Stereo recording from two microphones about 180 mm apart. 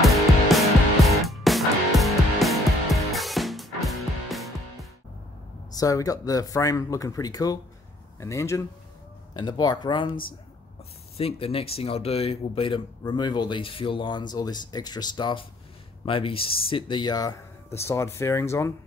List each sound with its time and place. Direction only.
0.0 s music: centre (ahead or behind)
5.7 s speech: 20° left (ahead or behind)
11.1 s speech: 35° left (ahead or behind); by 18.7 s 15° left (ahead or behind)